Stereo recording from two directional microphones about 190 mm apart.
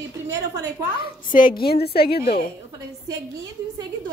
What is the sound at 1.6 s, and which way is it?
Speech, 55° left (ahead or behind).